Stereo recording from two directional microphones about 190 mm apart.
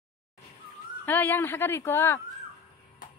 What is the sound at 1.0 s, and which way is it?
Speech, 10° left (ahead or behind).